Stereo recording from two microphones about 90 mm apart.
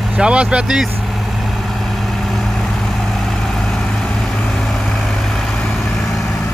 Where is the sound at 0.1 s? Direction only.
10° right (ahead or behind).